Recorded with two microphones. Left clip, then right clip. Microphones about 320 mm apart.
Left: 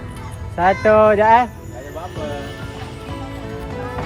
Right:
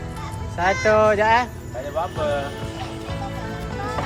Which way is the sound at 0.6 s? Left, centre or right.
Centre.